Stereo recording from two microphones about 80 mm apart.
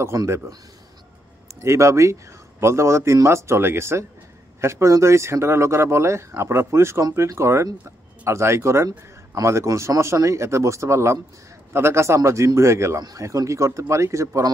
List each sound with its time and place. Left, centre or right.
0.0 s a man's voice: right
1.6 s a man's voice: right